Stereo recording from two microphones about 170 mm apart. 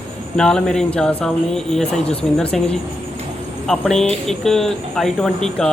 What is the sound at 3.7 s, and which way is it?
Speech, 5° left (ahead or behind).